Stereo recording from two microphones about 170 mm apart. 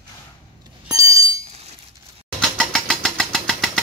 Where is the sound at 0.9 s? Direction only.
20° right (ahead or behind).